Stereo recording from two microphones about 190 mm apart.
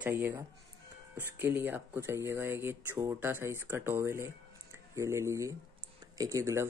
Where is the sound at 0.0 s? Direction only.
10° right (ahead or behind).